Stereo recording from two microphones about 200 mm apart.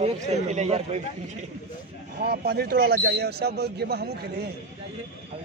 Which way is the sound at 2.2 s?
50° right (ahead or behind).